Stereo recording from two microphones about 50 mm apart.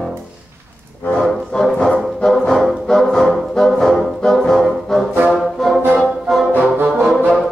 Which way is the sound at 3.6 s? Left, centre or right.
Centre.